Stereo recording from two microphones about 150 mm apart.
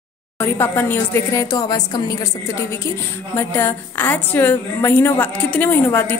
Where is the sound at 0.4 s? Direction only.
15° left (ahead or behind).